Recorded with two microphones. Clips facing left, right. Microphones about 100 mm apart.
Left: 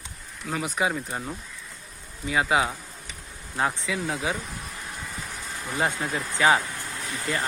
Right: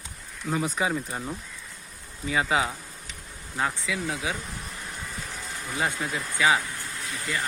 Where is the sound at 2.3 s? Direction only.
15° left (ahead or behind).